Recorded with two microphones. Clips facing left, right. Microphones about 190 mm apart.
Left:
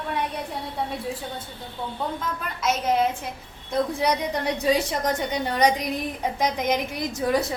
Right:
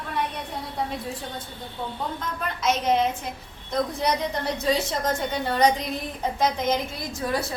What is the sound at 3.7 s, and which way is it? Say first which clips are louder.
A woman's voice: left 2 dB; 10° left (ahead or behind).